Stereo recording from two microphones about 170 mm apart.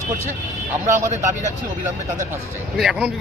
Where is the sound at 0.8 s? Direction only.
15° right (ahead or behind).